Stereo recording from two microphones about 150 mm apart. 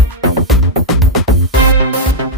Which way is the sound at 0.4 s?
Centre (ahead or behind).